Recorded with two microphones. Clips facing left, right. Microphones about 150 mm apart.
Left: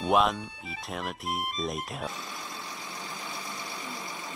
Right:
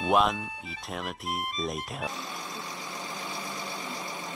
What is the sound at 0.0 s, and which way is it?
Speech, centre (ahead or behind).